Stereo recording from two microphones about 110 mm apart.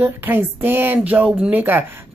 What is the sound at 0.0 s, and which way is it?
A woman's voice, 20° right (ahead or behind).